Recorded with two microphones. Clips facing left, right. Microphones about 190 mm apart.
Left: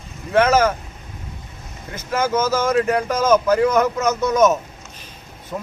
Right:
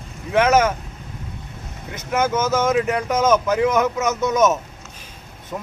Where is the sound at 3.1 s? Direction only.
20° right (ahead or behind).